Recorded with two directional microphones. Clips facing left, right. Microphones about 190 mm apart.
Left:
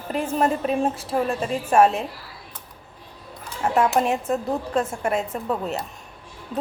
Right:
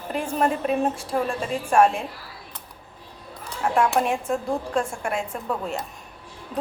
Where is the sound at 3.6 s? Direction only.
5° left (ahead or behind).